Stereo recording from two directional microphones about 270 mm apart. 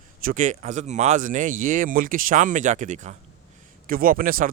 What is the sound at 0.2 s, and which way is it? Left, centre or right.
Speech, right.